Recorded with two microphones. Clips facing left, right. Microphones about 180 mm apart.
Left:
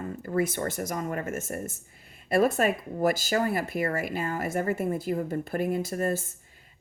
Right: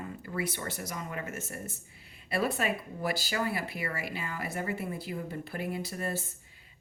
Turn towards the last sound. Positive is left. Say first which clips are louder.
# left 7 dB
turn(degrees=45)  # may be behind; listen again after turning